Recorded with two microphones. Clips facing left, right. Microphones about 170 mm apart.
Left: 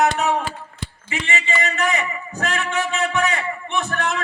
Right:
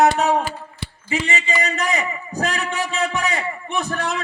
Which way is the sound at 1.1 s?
35° right (ahead or behind).